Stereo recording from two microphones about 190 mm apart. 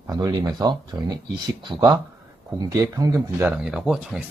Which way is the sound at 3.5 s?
5° right (ahead or behind).